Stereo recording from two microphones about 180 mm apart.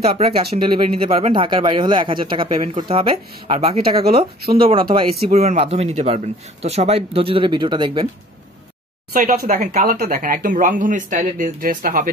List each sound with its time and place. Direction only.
0.0 s a man's voice: 35° right (ahead or behind)
9.1 s speech: 50° right (ahead or behind)